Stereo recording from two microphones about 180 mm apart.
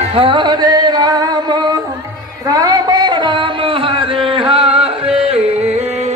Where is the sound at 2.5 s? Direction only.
20° right (ahead or behind).